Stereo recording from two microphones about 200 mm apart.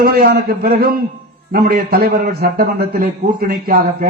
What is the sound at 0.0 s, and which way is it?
A man's voice, 50° right (ahead or behind).